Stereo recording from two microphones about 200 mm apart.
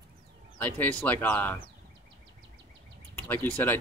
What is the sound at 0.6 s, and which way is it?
Speech, 10° left (ahead or behind).